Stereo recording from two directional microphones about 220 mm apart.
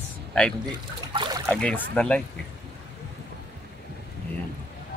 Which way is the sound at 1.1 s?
20° right (ahead or behind).